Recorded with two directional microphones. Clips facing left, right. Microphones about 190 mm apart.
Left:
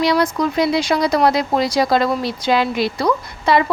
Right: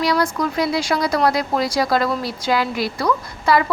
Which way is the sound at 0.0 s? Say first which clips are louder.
Left 3 dB; 20° left (ahead or behind).